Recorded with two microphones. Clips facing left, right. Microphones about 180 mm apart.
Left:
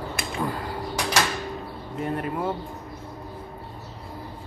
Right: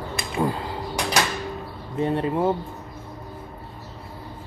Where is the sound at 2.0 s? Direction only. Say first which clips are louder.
Right 6 dB; 25° right (ahead or behind).